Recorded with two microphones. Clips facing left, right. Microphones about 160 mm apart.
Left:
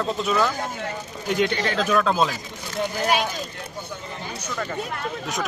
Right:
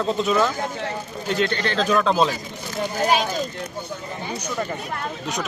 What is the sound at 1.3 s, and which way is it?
Speech, 15° left (ahead or behind).